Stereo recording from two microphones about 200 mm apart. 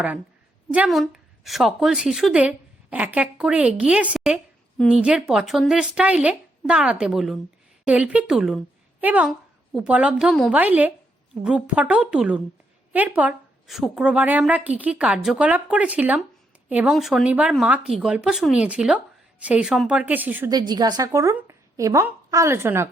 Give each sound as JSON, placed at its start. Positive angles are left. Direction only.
{"t": 0.7, "sound": "a woman's voice", "side_deg": -5}
{"t": 20.5, "sound": "a woman's voice", "side_deg": -20}